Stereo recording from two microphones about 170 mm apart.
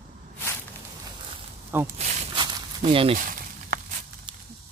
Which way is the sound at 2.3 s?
30° right (ahead or behind).